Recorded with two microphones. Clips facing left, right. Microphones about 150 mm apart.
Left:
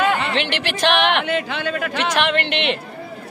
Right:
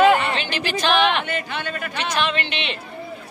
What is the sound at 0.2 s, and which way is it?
Speech, 70° left (ahead or behind).